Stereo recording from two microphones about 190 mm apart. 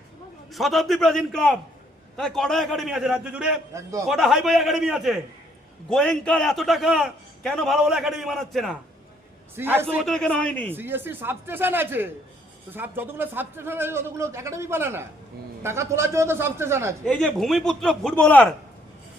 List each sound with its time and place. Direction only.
0.5 s a man's voice: centre (ahead or behind)
9.6 s speech: 10° right (ahead or behind)
10.0 s a man's voice: 5° left (ahead or behind)
10.8 s speech: 10° right (ahead or behind)
17.1 s a man's voice: 5° left (ahead or behind)